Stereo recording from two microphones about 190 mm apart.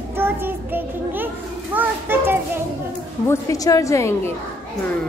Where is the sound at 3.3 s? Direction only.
15° left (ahead or behind).